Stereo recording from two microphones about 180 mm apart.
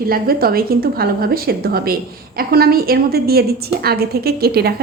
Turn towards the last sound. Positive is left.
turn(degrees=-60)  # may be behind; listen again after turning